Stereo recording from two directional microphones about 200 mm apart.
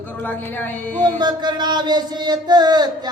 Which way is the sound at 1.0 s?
20° right (ahead or behind).